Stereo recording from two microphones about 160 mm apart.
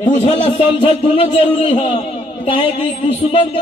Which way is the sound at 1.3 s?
35° left (ahead or behind).